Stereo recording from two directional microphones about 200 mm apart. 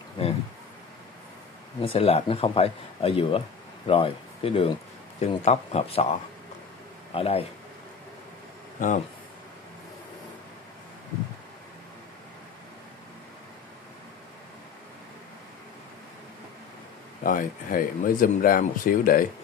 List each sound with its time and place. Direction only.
1.8 s speech: 30° left (ahead or behind)
7.2 s speech: 30° left (ahead or behind)
8.7 s speech: 40° left (ahead or behind)
17.2 s speech: 45° left (ahead or behind)